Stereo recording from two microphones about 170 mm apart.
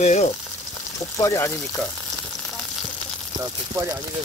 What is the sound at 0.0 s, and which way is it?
Frying, 40° left (ahead or behind).